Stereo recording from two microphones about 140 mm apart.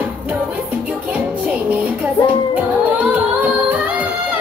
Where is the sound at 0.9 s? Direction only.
10° right (ahead or behind).